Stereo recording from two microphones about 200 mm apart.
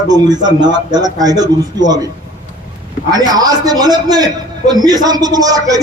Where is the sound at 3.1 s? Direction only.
20° right (ahead or behind).